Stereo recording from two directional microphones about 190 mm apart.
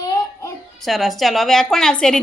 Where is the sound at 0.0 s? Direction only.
20° left (ahead or behind).